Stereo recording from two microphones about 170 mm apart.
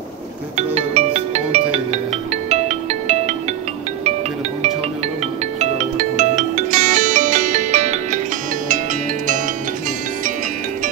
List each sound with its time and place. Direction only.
0.6 s music: 40° right (ahead or behind)
5.6 s music: 45° right (ahead or behind)